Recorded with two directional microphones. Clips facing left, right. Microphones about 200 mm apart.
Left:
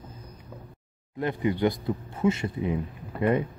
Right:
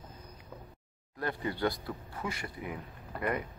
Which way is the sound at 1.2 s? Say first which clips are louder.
Left 7 dB; 20° left (ahead or behind).